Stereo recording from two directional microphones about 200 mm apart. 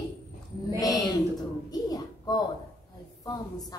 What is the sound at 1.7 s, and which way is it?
Child singing, 20° left (ahead or behind).